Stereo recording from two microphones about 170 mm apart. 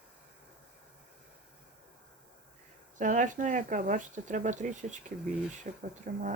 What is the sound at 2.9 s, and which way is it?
Speech, 50° right (ahead or behind).